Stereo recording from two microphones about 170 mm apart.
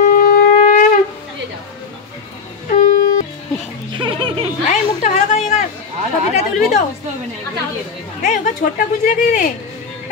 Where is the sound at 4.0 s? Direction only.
30° right (ahead or behind).